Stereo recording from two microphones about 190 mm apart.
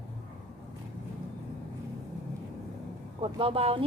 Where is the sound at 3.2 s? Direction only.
30° right (ahead or behind).